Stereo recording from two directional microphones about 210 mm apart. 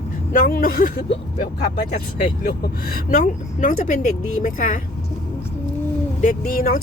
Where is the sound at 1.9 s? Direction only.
45° left (ahead or behind).